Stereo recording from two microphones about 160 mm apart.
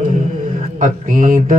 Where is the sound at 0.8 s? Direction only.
55° right (ahead or behind).